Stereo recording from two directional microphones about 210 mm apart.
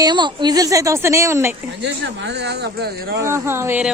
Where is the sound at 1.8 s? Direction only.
55° right (ahead or behind).